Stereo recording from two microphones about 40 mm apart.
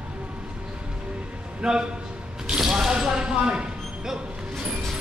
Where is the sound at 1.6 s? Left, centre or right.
Centre.